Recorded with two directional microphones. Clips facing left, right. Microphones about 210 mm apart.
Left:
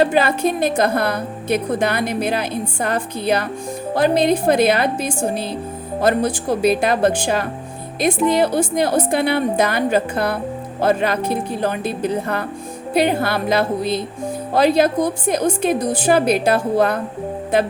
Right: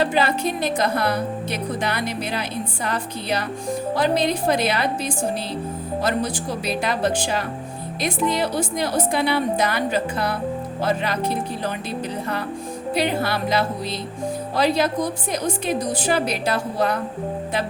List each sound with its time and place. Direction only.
0.0 s a woman's voice: 55° left (ahead or behind)